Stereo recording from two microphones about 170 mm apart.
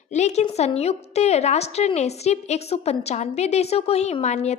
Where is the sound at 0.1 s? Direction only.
40° left (ahead or behind).